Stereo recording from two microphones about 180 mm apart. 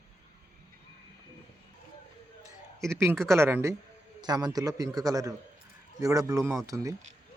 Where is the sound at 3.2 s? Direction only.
15° right (ahead or behind).